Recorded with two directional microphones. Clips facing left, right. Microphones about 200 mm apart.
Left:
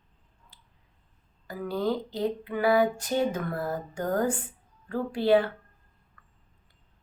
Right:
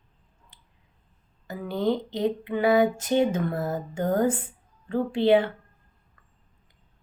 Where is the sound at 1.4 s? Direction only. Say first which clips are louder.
Right 3 dB; 25° right (ahead or behind).